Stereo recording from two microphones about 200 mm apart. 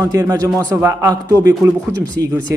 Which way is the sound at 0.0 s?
15° right (ahead or behind).